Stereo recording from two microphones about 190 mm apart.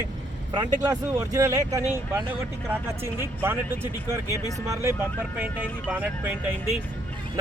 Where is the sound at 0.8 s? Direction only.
15° right (ahead or behind).